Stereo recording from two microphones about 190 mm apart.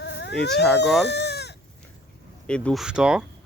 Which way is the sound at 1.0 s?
60° left (ahead or behind).